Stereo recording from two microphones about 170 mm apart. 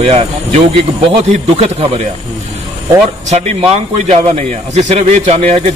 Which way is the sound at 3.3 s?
40° right (ahead or behind).